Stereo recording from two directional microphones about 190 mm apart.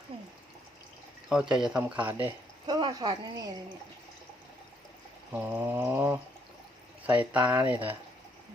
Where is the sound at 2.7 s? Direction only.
20° right (ahead or behind).